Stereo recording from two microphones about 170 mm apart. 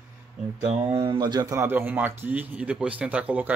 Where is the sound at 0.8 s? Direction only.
20° right (ahead or behind).